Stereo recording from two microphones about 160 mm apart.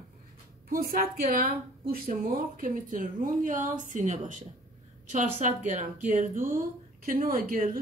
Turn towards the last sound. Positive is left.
turn(degrees=-55)  # may be behind; listen again after turning